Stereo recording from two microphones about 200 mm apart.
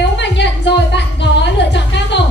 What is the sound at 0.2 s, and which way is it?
Music, 60° left (ahead or behind).